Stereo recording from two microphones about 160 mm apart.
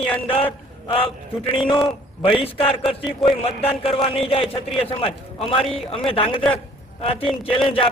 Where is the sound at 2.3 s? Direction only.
35° left (ahead or behind).